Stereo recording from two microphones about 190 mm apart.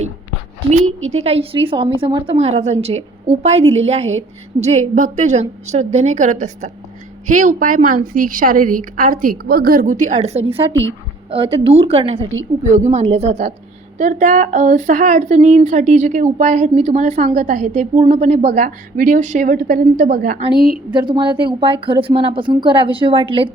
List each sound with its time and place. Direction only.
0.9 s a woman's voice: 90° right
1.1 s a woman's voice: 30° right (ahead or behind); by 20.4 s 50° right (ahead or behind)
20.6 s speech: 5° right (ahead or behind)
20.9 s a woman's voice: 25° right (ahead or behind)